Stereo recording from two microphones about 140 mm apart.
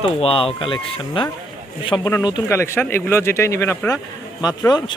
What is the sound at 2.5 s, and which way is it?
A man's voice, 20° left (ahead or behind).